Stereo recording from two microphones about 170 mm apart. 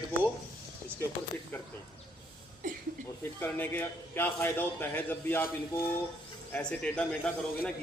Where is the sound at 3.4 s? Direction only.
10° left (ahead or behind).